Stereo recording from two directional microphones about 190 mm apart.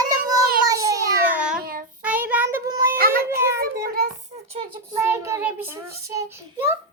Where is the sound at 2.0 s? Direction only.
10° right (ahead or behind).